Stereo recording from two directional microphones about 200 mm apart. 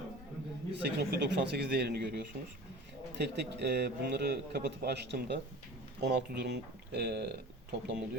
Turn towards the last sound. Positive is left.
turn(degrees=-55)  # may be behind; listen again after turning